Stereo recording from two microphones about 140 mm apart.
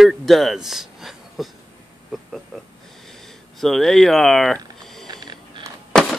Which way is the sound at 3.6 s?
5° left (ahead or behind).